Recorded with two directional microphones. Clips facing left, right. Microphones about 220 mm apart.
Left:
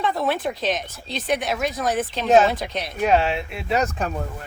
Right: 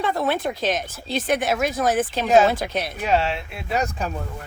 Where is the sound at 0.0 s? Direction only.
Centre (ahead or behind).